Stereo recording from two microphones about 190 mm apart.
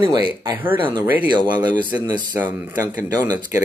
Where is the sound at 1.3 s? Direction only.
20° right (ahead or behind).